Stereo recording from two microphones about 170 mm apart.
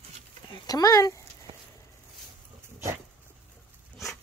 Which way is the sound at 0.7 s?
20° left (ahead or behind).